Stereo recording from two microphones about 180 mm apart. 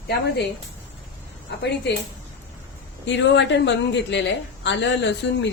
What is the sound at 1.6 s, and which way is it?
Speech, 70° left (ahead or behind).